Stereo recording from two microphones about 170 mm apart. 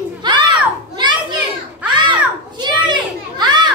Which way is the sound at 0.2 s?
25° right (ahead or behind).